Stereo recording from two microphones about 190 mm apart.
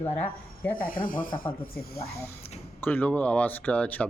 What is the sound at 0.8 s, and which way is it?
Speech, 45° left (ahead or behind).